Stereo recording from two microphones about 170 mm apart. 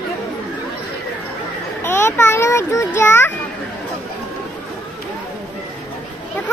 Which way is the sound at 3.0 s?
15° left (ahead or behind).